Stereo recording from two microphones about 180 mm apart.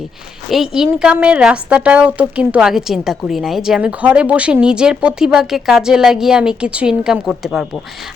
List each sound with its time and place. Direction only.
0.5 s a woman's voice: 5° right (ahead or behind)